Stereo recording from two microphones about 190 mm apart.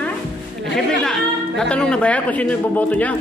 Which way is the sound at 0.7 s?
5° left (ahead or behind).